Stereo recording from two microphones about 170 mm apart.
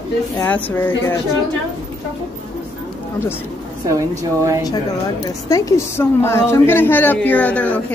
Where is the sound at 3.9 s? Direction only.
20° right (ahead or behind).